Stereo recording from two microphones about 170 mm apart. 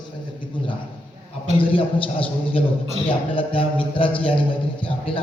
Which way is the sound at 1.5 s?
30° left (ahead or behind).